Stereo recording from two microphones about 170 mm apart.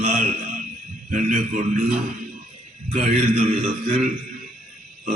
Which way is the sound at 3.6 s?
40° right (ahead or behind).